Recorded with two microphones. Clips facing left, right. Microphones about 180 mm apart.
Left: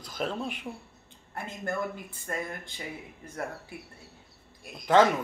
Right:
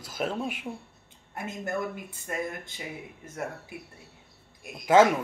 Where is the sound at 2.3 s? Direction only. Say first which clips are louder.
Right 1 dB; 10° right (ahead or behind).